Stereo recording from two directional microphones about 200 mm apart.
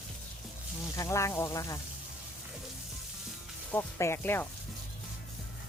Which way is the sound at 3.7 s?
10° left (ahead or behind).